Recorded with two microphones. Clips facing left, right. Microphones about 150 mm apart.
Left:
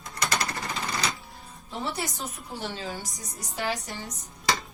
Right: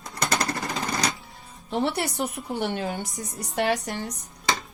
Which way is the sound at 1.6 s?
70° right (ahead or behind).